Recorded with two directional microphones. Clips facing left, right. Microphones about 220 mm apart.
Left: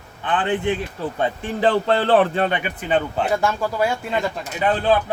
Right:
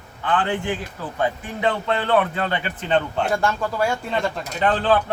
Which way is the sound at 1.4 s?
30° left (ahead or behind).